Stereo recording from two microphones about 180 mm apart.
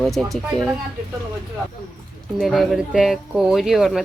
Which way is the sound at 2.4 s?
Centre (ahead or behind).